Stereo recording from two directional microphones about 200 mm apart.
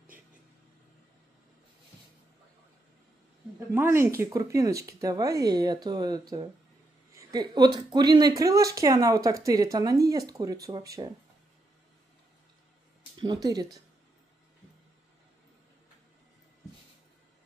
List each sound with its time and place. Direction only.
3.7 s speech: 10° right (ahead or behind)
13.2 s speech: 20° right (ahead or behind)